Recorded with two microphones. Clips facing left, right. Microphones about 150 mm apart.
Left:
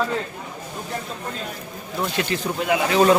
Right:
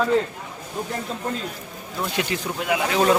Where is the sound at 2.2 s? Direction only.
15° right (ahead or behind).